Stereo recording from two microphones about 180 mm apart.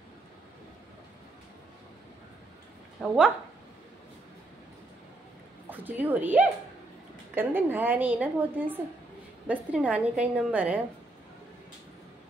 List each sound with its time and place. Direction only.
3.0 s speech: 5° left (ahead or behind)
5.7 s a woman's voice: 10° right (ahead or behind)